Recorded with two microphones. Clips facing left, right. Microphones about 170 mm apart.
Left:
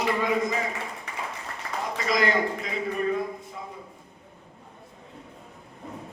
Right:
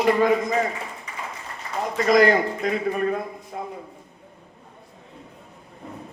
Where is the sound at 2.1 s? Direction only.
50° right (ahead or behind).